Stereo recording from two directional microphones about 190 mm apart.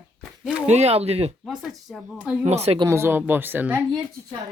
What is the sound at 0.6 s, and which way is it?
Speech, 35° right (ahead or behind).